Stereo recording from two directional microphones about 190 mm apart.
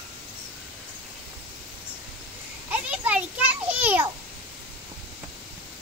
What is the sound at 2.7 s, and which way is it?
Children playing, 5° right (ahead or behind).